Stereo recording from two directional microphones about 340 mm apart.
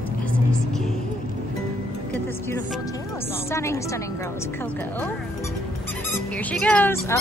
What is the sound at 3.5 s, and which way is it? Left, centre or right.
Speech, centre.